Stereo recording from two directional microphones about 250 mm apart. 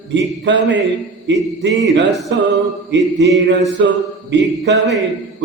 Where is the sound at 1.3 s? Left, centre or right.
Right.